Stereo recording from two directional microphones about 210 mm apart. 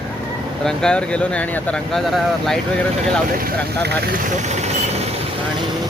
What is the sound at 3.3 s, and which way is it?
Speech, 50° right (ahead or behind).